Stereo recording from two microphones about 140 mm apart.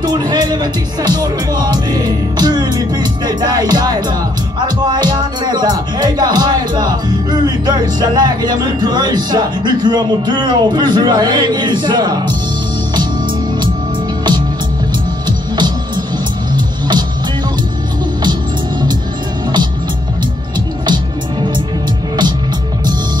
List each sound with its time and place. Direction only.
0.0 s speech: 30° right (ahead or behind)
15.2 s music: 30° right (ahead or behind)
20.8 s music: 30° right (ahead or behind)